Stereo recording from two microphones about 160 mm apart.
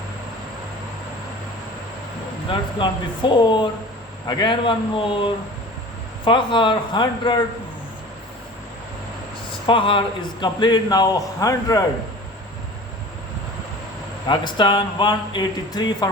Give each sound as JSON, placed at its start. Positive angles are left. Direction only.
{"t": 2.5, "sound": "speech", "side_deg": 30}
{"t": 9.6, "sound": "speech", "side_deg": 30}
{"t": 14.3, "sound": "speech", "side_deg": 30}